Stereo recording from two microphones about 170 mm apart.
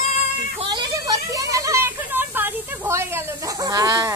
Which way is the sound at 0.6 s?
25° right (ahead or behind).